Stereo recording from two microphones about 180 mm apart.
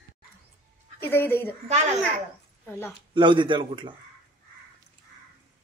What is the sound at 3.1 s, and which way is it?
Speech, 25° right (ahead or behind).